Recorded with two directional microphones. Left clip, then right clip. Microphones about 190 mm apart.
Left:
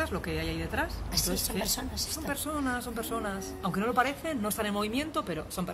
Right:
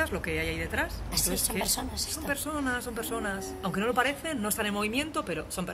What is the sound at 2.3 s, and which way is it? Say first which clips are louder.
Speech: right 2 dB; 10° left (ahead or behind).